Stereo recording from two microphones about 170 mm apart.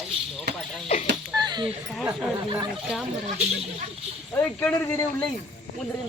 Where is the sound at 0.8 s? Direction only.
40° left (ahead or behind).